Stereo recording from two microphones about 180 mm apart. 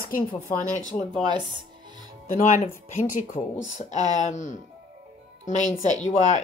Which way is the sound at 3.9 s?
20° right (ahead or behind).